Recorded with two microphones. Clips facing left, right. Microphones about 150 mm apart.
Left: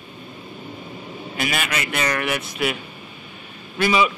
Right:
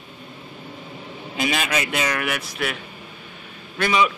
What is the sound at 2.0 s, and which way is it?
A man's voice, 5° right (ahead or behind).